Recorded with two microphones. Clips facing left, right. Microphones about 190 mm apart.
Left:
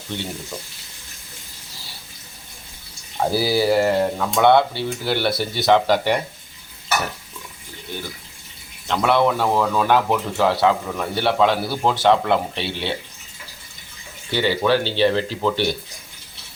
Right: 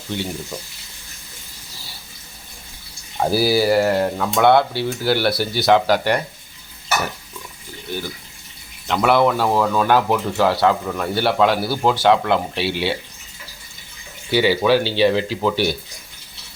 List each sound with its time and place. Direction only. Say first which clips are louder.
3.2 s speech: right 2 dB; 5° right (ahead or behind)
8.9 s speech: right 2 dB; 5° right (ahead or behind)
14.3 s speech: right 3 dB; 10° right (ahead or behind)